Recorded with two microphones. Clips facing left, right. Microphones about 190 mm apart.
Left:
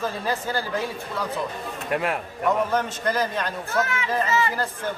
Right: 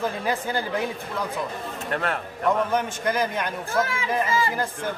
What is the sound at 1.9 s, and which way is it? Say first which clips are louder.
Speech: left 2 dB; 10° left (ahead or behind).